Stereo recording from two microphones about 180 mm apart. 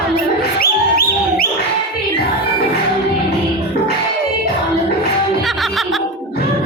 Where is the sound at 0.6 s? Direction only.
55° left (ahead or behind).